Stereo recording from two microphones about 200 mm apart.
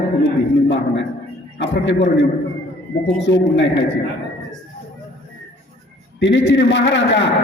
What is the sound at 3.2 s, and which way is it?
Speech, 60° left (ahead or behind).